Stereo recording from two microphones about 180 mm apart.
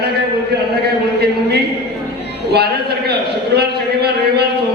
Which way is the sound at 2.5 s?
65° right (ahead or behind).